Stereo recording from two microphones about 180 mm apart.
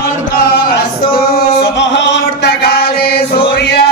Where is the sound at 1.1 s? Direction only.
60° left (ahead or behind).